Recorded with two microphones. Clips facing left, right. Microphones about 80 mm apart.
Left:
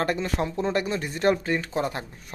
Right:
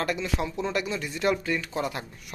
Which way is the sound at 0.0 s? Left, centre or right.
Left.